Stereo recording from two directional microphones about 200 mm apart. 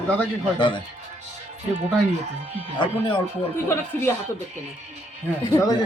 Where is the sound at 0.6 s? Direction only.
25° left (ahead or behind).